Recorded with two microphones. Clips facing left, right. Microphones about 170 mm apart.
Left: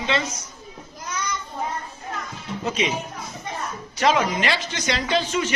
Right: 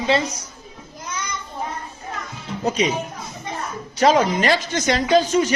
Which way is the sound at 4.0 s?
40° right (ahead or behind).